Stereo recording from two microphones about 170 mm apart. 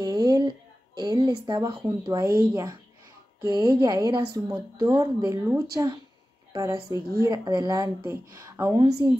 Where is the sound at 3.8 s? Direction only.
25° right (ahead or behind).